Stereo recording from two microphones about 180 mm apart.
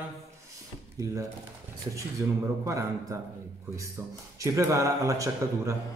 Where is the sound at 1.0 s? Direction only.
20° right (ahead or behind).